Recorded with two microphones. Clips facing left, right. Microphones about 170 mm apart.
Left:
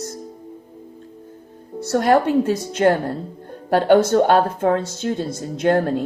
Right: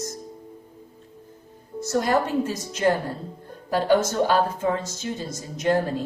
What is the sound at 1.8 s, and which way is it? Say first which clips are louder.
Speech: left 6 dB; 65° left (ahead or behind).